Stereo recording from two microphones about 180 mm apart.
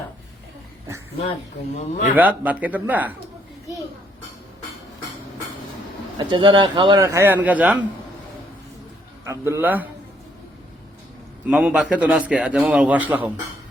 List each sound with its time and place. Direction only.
1.8 s a man's voice: 40° left (ahead or behind)
2.1 s a man's voice: 10° right (ahead or behind)
6.1 s speech: 25° right (ahead or behind); by 7.8 s 10° right (ahead or behind)
9.2 s a man's voice: 15° right (ahead or behind)
11.4 s a man's voice: 5° right (ahead or behind)